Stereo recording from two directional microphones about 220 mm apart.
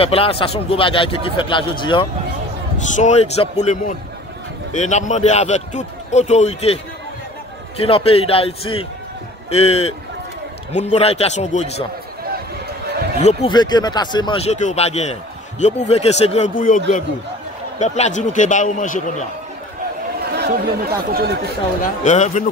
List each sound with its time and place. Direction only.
0.0 s a man's voice: 25° left (ahead or behind)
7.8 s a man's voice: 25° left (ahead or behind)
13.2 s a man's voice: 30° left (ahead or behind)
20.3 s speech: 45° right (ahead or behind)
22.0 s a man's voice: 35° left (ahead or behind)